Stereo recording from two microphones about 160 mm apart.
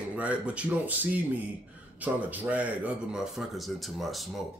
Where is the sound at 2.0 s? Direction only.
10° right (ahead or behind).